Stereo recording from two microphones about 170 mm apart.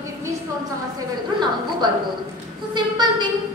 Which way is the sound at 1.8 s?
25° right (ahead or behind).